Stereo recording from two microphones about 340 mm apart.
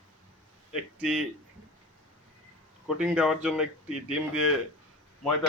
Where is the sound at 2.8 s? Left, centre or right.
Centre.